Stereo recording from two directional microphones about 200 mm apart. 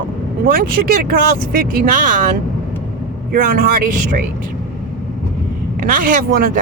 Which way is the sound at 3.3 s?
45° right (ahead or behind).